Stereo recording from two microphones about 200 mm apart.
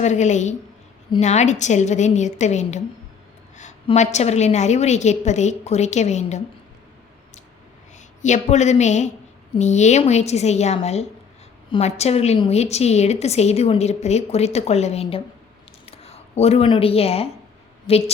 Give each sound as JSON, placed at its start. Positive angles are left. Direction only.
{"t": 0.0, "sound": "a woman's voice", "side_deg": 35}
{"t": 8.2, "sound": "a woman's voice", "side_deg": 35}